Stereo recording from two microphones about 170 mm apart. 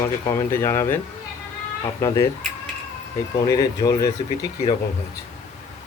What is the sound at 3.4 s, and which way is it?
Speech, 20° left (ahead or behind).